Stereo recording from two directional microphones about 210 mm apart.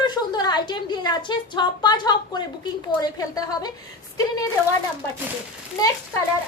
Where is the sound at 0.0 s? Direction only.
20° left (ahead or behind).